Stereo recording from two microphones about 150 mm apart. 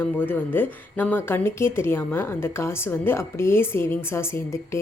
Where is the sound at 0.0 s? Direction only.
15° left (ahead or behind).